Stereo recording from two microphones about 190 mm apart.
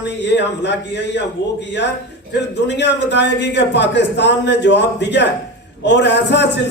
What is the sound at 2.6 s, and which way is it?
A man's voice, 65° left (ahead or behind).